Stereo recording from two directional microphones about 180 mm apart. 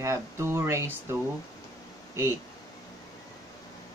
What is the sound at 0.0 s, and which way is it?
Speech, 15° right (ahead or behind).